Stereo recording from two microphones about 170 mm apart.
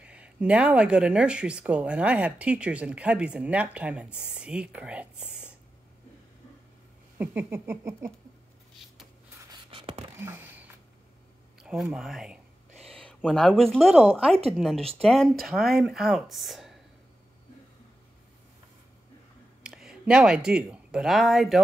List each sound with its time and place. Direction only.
0.0 s speech: 5° right (ahead or behind)
7.2 s speech: 10° right (ahead or behind)
9.5 s writing: 30° right (ahead or behind)
10.1 s a sound: 15° right (ahead or behind)
12.9 s a woman's voice: 5° left (ahead or behind)
19.6 s speech: 5° right (ahead or behind)